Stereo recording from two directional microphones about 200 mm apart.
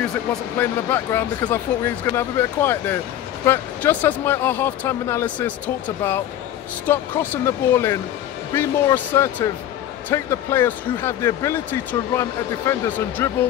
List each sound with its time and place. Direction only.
0.6 s speech: 10° left (ahead or behind)